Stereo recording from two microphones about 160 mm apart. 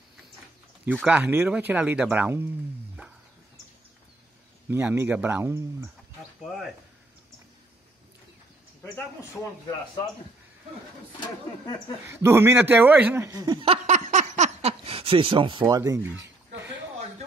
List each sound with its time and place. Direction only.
1.0 s speech: 10° right (ahead or behind)
4.6 s speech: 15° right (ahead or behind)
6.4 s speech: centre (ahead or behind)
12.1 s speech: 15° right (ahead or behind)
13.8 s a sound: 50° right (ahead or behind); by 16.1 s 20° right (ahead or behind)